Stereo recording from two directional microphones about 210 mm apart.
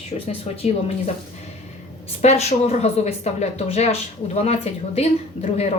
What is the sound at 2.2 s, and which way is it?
A woman's voice, 30° left (ahead or behind).